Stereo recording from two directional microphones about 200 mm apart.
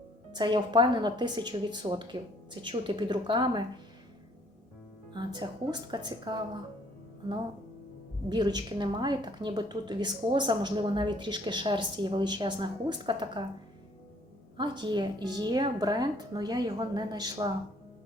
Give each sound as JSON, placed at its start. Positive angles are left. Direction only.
{"t": 0.3, "sound": "a woman's voice", "side_deg": -20}
{"t": 5.1, "sound": "a woman's voice", "side_deg": -20}
{"t": 8.3, "sound": "a woman's voice", "side_deg": -20}
{"t": 14.5, "sound": "a woman's voice", "side_deg": -20}